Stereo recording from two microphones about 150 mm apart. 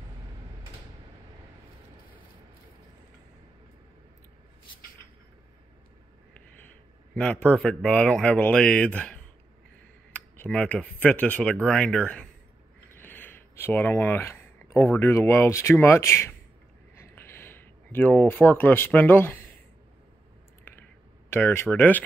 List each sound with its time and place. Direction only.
7.2 s a man's voice: 10° left (ahead or behind)
20.7 s a sound: 15° left (ahead or behind)
21.3 s a man's voice: 15° left (ahead or behind)